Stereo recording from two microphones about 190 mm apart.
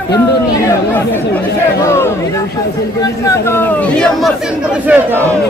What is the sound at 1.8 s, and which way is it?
Speech, 15° left (ahead or behind).